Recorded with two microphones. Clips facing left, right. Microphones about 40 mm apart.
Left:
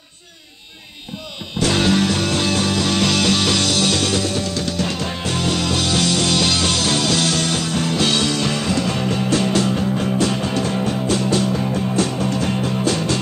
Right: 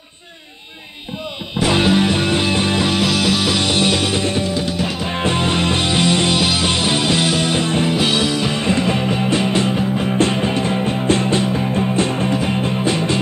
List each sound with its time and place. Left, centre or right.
1.6 s music: centre
3.6 s music: centre
5.1 s music: right